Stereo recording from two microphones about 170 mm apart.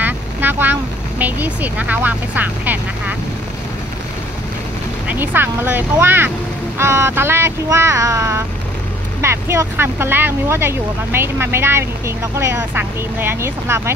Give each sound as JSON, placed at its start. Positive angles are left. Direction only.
{"t": 0.0, "sound": "vehicle", "side_deg": -10}
{"t": 1.2, "sound": "speech", "side_deg": -10}
{"t": 5.0, "sound": "speech", "side_deg": -10}